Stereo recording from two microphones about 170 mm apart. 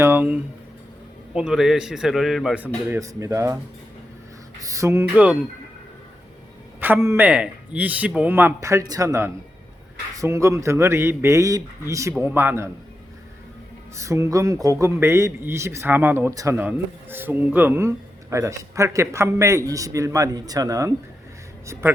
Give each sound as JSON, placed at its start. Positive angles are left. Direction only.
{"t": 0.0, "sound": "a man's voice", "side_deg": -10}
{"t": 3.0, "sound": "speech", "side_deg": -20}
{"t": 4.6, "sound": "a man's voice", "side_deg": -20}
{"t": 6.7, "sound": "a man's voice", "side_deg": -10}
{"t": 13.9, "sound": "a man's voice", "side_deg": -15}